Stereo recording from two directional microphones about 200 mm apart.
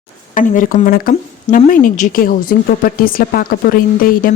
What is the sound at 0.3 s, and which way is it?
Speech, 40° left (ahead or behind).